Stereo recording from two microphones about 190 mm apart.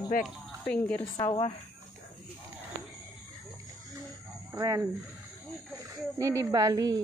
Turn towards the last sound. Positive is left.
turn(degrees=-20)  # may be behind; listen again after turning